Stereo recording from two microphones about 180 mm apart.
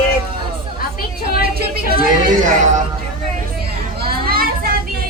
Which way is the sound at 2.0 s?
45° right (ahead or behind).